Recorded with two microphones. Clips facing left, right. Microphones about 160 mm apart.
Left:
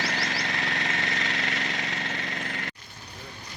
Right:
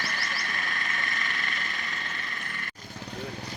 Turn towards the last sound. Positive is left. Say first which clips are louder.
# left 5 dB
turn(degrees=80)